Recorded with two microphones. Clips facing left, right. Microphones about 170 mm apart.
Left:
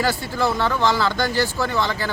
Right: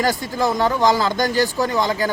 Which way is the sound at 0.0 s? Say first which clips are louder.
Right 2 dB; 15° right (ahead or behind).